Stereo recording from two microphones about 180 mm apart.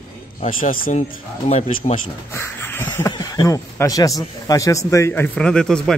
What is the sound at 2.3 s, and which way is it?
Speech, 10° left (ahead or behind).